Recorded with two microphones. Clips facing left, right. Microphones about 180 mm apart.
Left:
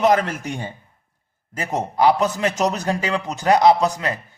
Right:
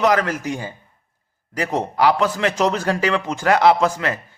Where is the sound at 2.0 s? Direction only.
20° left (ahead or behind).